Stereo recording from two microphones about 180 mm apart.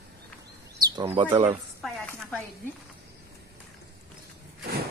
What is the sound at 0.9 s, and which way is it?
Speech, 30° right (ahead or behind).